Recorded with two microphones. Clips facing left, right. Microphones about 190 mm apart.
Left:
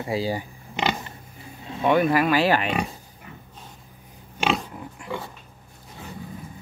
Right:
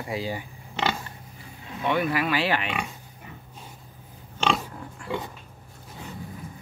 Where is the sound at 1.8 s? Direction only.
45° left (ahead or behind).